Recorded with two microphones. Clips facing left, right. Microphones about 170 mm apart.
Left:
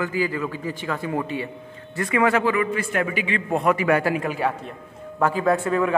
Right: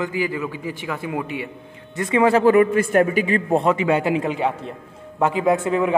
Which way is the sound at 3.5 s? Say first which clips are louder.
Left 1 dB; 25° right (ahead or behind).